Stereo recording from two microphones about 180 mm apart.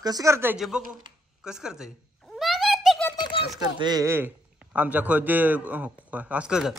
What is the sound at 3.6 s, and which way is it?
A man's voice, 20° right (ahead or behind).